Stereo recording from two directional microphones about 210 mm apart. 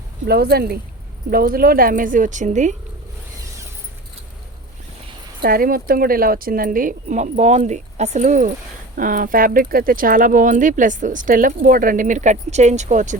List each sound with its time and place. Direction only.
0.3 s speech: 45° right (ahead or behind)
5.4 s speech: 45° right (ahead or behind)